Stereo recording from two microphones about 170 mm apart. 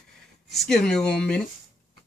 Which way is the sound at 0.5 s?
5° left (ahead or behind).